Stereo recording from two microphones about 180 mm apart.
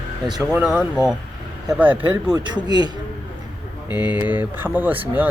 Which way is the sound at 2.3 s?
25° right (ahead or behind).